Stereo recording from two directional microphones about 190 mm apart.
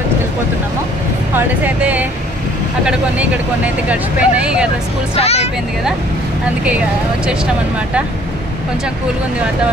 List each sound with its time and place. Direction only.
1.3 s speech: 10° right (ahead or behind)
5.1 s speech: 35° left (ahead or behind)